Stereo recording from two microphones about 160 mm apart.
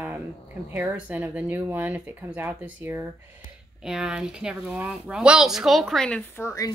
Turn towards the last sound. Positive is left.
turn(degrees=15)  # may be behind; listen again after turning